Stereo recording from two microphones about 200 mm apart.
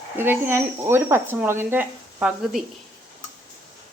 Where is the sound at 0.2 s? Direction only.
10° right (ahead or behind).